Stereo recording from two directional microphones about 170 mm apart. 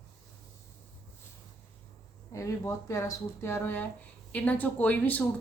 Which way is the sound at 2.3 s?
15° left (ahead or behind).